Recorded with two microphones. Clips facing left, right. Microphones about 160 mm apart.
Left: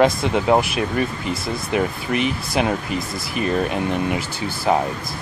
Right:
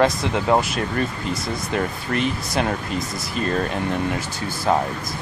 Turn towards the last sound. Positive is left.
turn(degrees=15)  # may be behind; listen again after turning